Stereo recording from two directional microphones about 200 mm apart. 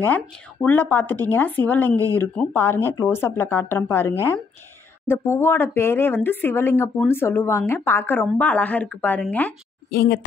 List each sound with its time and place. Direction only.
0.0 s speech: 10° left (ahead or behind)
9.8 s speech: 50° left (ahead or behind)